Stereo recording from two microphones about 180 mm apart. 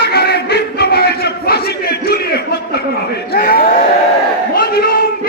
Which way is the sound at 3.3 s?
55° left (ahead or behind).